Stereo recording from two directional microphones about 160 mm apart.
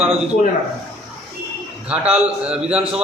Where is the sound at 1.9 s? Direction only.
5° right (ahead or behind).